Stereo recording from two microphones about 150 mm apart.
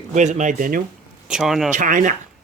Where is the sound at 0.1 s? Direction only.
55° right (ahead or behind).